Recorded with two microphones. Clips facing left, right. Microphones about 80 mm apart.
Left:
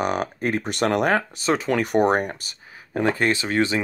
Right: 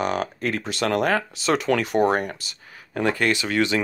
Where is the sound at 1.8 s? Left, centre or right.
Left.